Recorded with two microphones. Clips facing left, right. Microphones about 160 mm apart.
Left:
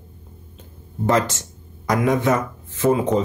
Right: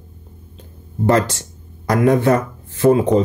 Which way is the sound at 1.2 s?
35° right (ahead or behind).